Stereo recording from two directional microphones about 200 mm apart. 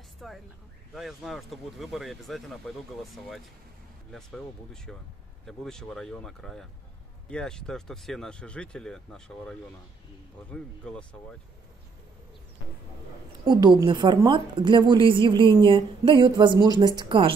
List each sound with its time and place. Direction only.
0.2 s a sound: centre (ahead or behind)
0.9 s speech: centre (ahead or behind)
4.9 s speech: 5° left (ahead or behind)
13.5 s a woman's voice: 20° right (ahead or behind)